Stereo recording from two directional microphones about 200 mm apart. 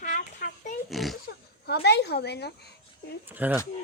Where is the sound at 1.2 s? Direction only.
55° left (ahead or behind).